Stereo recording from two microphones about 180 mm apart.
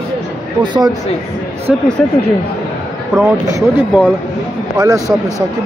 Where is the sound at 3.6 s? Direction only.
10° right (ahead or behind).